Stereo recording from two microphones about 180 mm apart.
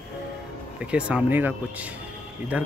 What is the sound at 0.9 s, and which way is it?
Speech, 10° right (ahead or behind).